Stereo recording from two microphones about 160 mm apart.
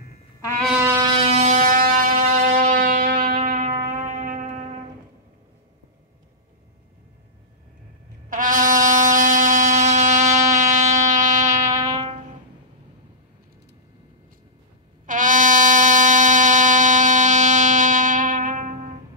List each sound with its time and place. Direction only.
0.7 s a sound: 15° right (ahead or behind)
1.0 s shofar: 40° right (ahead or behind); by 3.6 s 60° right (ahead or behind)
3.8 s music: 55° right (ahead or behind)
8.3 s brass instrument: 55° right (ahead or behind)
11.8 s music: 30° right (ahead or behind)
15.0 s music: 55° right (ahead or behind)